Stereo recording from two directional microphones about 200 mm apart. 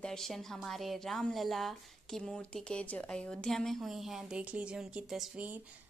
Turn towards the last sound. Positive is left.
turn(degrees=-5)  # may be behind; listen again after turning